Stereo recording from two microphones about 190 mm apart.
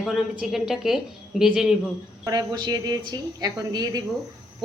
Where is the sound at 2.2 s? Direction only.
20° right (ahead or behind).